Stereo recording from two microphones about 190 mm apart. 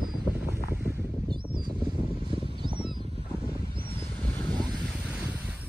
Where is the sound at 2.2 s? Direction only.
25° right (ahead or behind).